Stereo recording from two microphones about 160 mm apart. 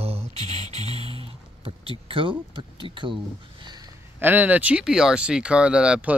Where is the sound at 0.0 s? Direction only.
40° right (ahead or behind).